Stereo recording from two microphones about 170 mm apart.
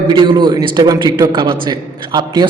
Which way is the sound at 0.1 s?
30° right (ahead or behind).